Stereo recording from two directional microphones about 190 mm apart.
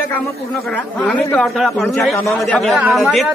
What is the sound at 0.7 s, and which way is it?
A man's voice, 5° left (ahead or behind).